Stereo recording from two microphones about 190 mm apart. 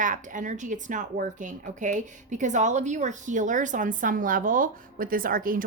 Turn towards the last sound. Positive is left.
turn(degrees=-50)  # may be behind; listen again after turning